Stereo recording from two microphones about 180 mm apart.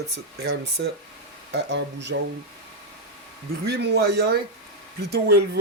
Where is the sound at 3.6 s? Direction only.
65° right (ahead or behind).